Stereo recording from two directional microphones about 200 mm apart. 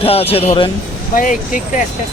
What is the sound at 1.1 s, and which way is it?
Speech, 40° left (ahead or behind).